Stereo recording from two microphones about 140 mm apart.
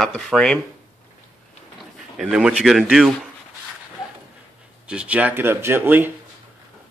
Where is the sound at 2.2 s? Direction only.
5° right (ahead or behind).